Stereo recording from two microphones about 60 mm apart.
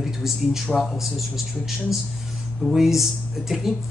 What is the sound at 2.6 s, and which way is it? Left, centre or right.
Speech, centre.